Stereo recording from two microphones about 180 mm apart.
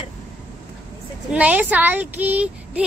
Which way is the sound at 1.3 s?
10° right (ahead or behind).